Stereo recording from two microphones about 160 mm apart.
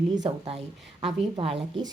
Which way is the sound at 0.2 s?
30° right (ahead or behind).